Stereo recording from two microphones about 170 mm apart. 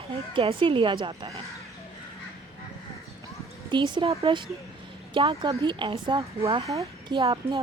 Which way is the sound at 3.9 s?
30° right (ahead or behind).